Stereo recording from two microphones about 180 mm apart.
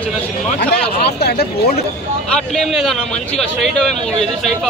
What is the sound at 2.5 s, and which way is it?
Speech, centre (ahead or behind).